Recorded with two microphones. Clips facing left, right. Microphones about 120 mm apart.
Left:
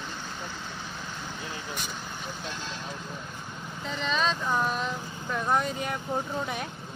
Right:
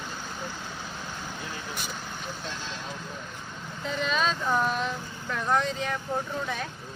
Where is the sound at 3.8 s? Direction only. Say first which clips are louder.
Right 1 dB; centre (ahead or behind).